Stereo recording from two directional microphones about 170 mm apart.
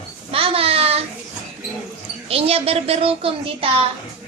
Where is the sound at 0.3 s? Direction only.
35° right (ahead or behind).